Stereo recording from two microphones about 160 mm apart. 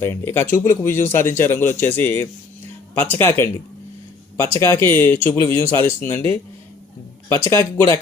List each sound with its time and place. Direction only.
0.0 s speech: 15° left (ahead or behind)
7.4 s speech: 20° left (ahead or behind)